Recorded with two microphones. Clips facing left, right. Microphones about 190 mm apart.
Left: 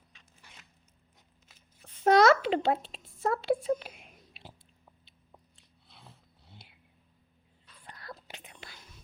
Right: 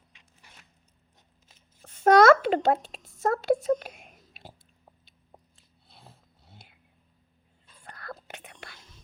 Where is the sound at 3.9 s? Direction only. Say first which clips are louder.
Right 2 dB; 45° right (ahead or behind).